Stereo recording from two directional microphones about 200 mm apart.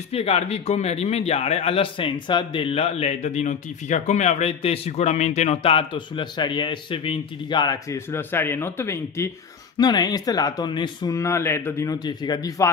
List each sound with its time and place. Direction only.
0.1 s a man's voice: 30° left (ahead or behind)